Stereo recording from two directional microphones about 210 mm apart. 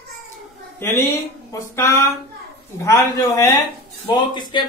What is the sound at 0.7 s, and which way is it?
Speech, 10° left (ahead or behind).